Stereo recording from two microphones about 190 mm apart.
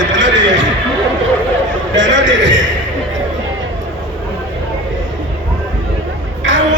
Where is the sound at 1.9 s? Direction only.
75° right (ahead or behind).